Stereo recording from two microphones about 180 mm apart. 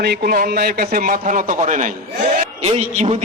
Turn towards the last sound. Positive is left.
turn(degrees=-35)  # may be behind; listen again after turning